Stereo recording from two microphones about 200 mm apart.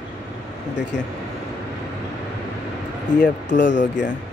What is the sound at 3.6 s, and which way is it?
Speech, 60° left (ahead or behind).